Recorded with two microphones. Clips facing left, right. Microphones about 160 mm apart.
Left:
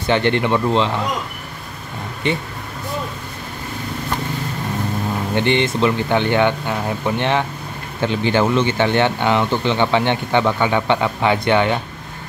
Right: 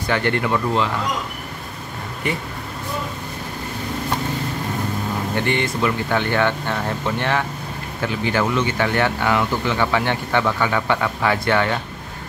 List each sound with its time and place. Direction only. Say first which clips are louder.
0.0 s speech: left 4 dB; 25° left (ahead or behind)
5.3 s speech: left 5 dB; 20° left (ahead or behind)